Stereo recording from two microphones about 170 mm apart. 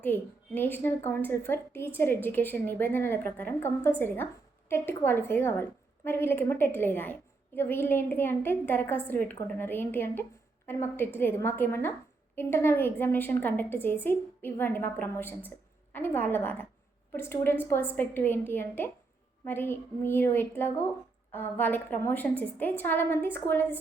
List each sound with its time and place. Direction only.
0.0 s a woman's voice: 10° left (ahead or behind)